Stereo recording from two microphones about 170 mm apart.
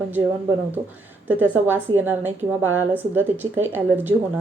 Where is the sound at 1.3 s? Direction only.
10° right (ahead or behind).